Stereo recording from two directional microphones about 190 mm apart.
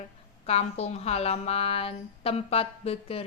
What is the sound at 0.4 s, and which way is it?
A woman's voice, 35° left (ahead or behind).